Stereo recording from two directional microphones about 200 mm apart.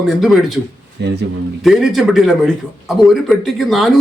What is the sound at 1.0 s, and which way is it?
Speech, 60° right (ahead or behind).